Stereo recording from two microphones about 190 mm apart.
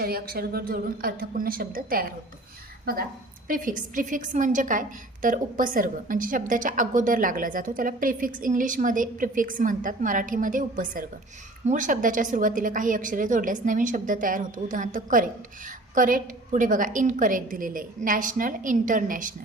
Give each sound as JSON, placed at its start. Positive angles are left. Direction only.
{"t": 0.0, "sound": "a woman's voice", "side_deg": -50}